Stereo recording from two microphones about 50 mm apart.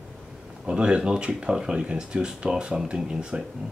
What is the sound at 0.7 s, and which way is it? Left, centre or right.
Speech, centre.